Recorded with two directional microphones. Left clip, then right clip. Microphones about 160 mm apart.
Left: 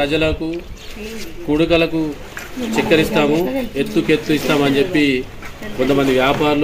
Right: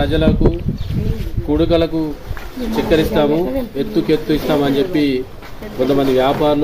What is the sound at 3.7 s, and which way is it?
A man's voice, 10° right (ahead or behind).